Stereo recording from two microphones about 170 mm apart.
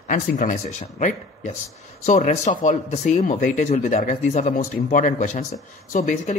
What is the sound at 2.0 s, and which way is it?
Speech, 45° left (ahead or behind).